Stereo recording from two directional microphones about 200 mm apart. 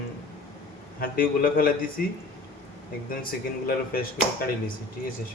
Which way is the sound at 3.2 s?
45° left (ahead or behind).